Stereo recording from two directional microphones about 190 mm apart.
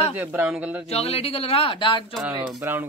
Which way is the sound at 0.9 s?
30° left (ahead or behind).